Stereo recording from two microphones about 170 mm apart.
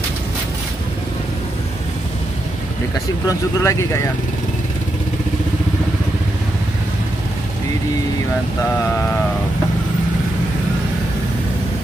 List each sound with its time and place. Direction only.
3.3 s speech: 15° left (ahead or behind)